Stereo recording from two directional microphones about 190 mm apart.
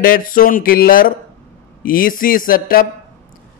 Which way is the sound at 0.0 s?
50° left (ahead or behind).